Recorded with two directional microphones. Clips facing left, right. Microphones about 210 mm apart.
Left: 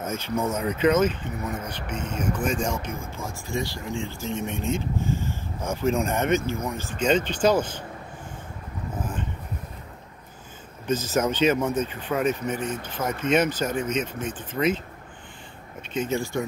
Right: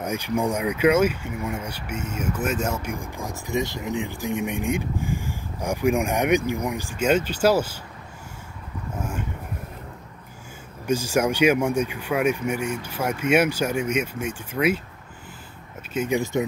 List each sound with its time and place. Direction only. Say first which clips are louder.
0.0 s speech: right 2 dB; 15° right (ahead or behind)
10.9 s speech: right 2 dB; 10° right (ahead or behind)
15.9 s speech: right 2 dB; 10° right (ahead or behind)
16.2 s speech: right 4 dB; 20° right (ahead or behind)